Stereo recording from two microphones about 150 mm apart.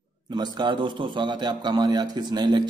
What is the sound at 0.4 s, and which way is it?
A man's voice, 30° right (ahead or behind).